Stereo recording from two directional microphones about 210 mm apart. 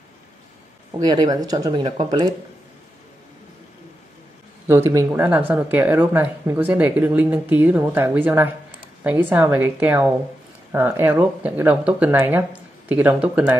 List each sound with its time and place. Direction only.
0.9 s speech: 20° right (ahead or behind)
4.6 s speech: 15° right (ahead or behind)